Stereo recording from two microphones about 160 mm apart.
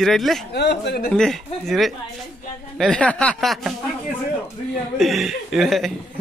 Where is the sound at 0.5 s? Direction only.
90° left.